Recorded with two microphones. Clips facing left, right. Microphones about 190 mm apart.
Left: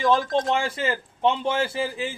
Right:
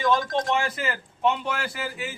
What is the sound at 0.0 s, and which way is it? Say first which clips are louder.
A man's voice: left 2 dB; 35° left (ahead or behind).